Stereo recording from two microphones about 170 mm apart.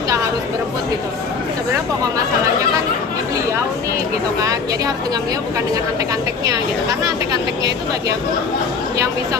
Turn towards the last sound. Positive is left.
turn(degrees=-25)  # may be behind; listen again after turning